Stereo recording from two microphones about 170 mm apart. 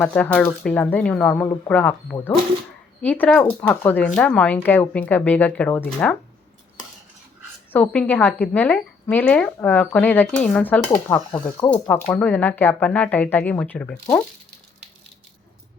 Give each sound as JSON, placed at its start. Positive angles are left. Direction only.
{"t": 0.0, "sound": "a woman's voice", "side_deg": 5}
{"t": 7.7, "sound": "a woman's voice", "side_deg": 10}
{"t": 11.3, "sound": "speech", "side_deg": 25}
{"t": 11.7, "sound": "a woman's voice", "side_deg": 10}